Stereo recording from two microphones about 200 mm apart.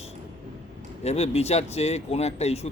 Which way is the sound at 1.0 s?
30° left (ahead or behind).